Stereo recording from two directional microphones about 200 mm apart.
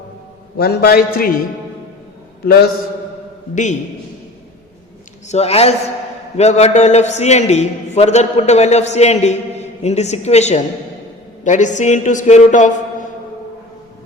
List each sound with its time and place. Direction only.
0.5 s a man's voice: 50° left (ahead or behind)
2.4 s a man's voice: 50° left (ahead or behind)
3.5 s a man's voice: 35° left (ahead or behind)
5.3 s a man's voice: 30° left (ahead or behind)